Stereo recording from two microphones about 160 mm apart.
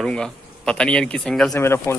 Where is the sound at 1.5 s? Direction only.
15° left (ahead or behind).